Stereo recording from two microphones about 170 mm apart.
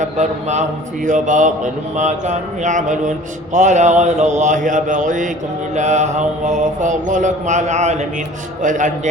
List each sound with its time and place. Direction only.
0.0 s speech: 45° right (ahead or behind)